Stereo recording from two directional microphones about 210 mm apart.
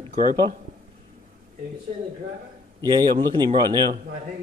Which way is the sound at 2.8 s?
20° right (ahead or behind).